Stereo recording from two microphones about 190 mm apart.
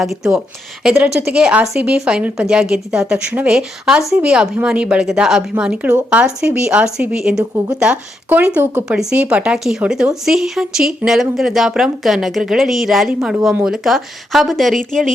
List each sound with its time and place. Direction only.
0.0 s speech: centre (ahead or behind)